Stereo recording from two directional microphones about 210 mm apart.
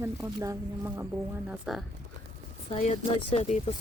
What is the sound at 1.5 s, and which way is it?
Speech, centre (ahead or behind).